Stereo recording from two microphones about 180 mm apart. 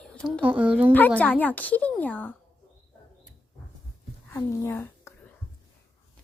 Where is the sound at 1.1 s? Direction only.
10° left (ahead or behind).